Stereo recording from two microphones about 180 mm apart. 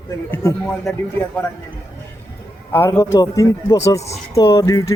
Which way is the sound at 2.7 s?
15° left (ahead or behind).